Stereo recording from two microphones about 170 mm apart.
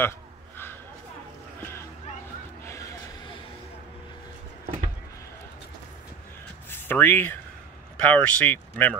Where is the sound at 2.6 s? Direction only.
15° left (ahead or behind).